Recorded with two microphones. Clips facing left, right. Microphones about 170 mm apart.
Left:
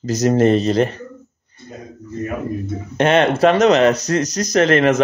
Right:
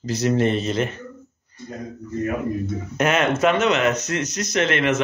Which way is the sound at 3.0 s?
30° left (ahead or behind).